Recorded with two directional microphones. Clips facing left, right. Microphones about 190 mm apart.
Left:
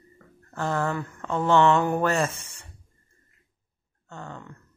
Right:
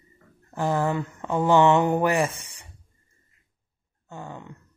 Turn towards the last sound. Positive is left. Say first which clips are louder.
# right 2 dB
turn(degrees=-15)  # may be behind; listen again after turning